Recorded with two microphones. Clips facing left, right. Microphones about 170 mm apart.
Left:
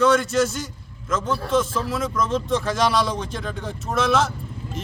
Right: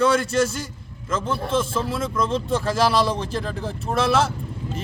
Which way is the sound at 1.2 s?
30° right (ahead or behind).